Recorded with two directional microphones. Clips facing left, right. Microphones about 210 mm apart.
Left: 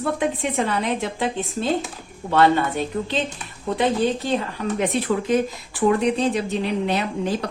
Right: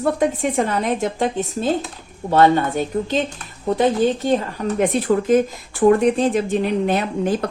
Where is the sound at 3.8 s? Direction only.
45° right (ahead or behind).